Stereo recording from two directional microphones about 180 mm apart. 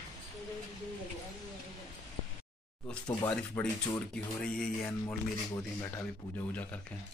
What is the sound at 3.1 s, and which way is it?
Speech, 20° left (ahead or behind).